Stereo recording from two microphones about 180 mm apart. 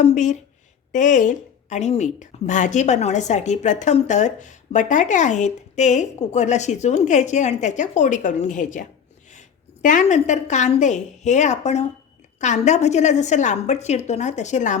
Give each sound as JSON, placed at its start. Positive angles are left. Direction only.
{"t": 0.0, "sound": "a woman's voice", "side_deg": 40}